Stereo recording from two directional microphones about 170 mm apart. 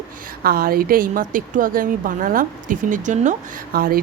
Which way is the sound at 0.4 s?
60° right (ahead or behind).